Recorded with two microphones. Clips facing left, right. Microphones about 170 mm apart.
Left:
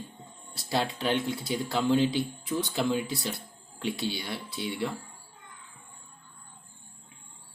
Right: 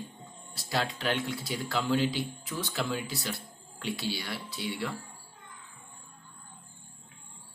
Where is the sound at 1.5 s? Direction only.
25° left (ahead or behind).